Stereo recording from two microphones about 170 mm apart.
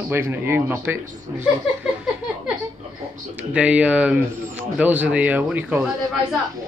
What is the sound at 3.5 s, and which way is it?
A man's voice, 5° right (ahead or behind).